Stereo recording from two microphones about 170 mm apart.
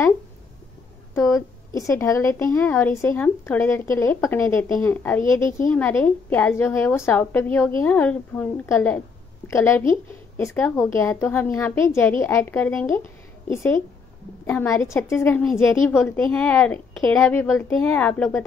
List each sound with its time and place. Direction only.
1.7 s speech: 20° left (ahead or behind)